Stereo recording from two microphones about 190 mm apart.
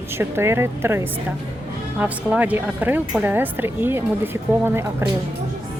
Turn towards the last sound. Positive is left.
turn(degrees=-15)  # may be behind; listen again after turning